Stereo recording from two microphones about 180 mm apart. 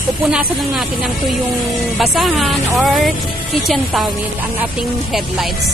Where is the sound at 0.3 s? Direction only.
5° right (ahead or behind).